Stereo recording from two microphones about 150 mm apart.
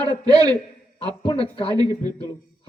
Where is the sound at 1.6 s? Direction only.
30° right (ahead or behind).